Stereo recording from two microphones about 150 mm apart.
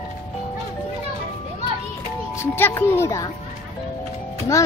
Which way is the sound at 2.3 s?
15° left (ahead or behind).